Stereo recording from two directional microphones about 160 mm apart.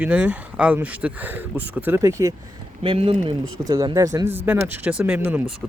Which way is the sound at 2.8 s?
35° right (ahead or behind).